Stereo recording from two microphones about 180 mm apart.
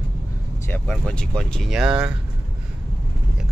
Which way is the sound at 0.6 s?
10° left (ahead or behind).